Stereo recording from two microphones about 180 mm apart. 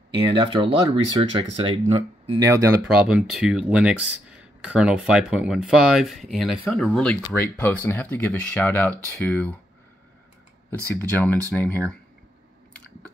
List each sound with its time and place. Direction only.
0.3 s speech: 25° right (ahead or behind)
2.4 s speech: 15° right (ahead or behind)
2.8 s speech: 5° right (ahead or behind)
11.0 s speech: 10° left (ahead or behind)